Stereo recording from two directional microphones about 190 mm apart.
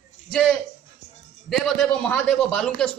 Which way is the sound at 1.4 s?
Centre (ahead or behind).